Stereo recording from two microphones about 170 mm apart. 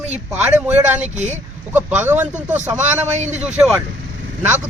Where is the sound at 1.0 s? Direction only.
45° right (ahead or behind).